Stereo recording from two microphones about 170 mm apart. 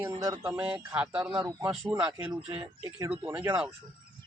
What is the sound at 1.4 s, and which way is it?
Speech, 20° right (ahead or behind).